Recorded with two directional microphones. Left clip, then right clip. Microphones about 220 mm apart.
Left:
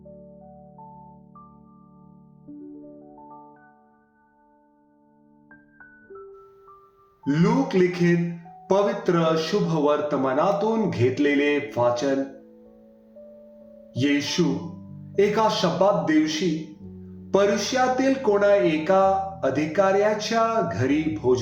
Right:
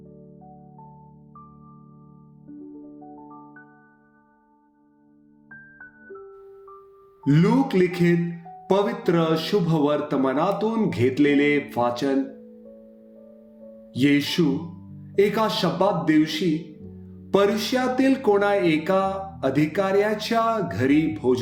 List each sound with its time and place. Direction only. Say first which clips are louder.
7.3 s music: right 2 dB; 45° right (ahead or behind)
13.9 s music: right 2 dB; 50° right (ahead or behind)